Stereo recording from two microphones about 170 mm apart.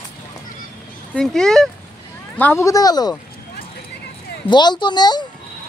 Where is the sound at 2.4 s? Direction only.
15° left (ahead or behind).